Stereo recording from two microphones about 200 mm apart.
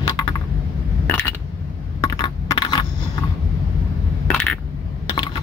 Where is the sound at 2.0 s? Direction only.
25° left (ahead or behind).